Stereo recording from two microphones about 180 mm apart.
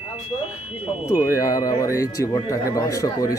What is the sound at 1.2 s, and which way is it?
Speech, 20° left (ahead or behind).